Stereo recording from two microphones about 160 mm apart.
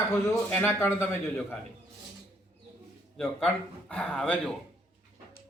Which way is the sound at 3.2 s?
5° left (ahead or behind).